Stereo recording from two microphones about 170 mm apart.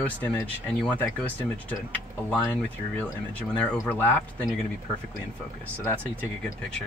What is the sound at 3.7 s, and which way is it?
Speech, 15° left (ahead or behind).